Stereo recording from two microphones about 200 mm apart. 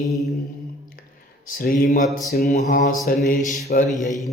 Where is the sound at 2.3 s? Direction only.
35° left (ahead or behind).